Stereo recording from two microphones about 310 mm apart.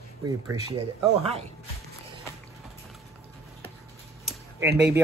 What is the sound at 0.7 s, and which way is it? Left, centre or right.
Speech, centre.